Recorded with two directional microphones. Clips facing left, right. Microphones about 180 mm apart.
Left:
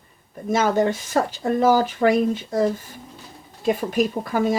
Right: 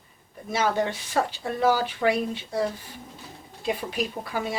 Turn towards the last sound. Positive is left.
turn(degrees=45)  # may be behind; listen again after turning